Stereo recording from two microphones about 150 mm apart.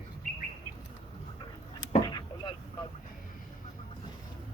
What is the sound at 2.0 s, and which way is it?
Vehicle, 30° left (ahead or behind).